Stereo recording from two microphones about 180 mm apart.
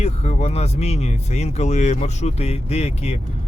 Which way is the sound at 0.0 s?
35° left (ahead or behind).